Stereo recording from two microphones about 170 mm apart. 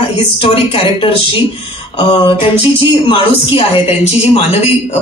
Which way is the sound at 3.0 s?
30° left (ahead or behind).